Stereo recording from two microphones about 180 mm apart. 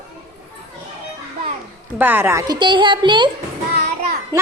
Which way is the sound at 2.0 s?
10° right (ahead or behind).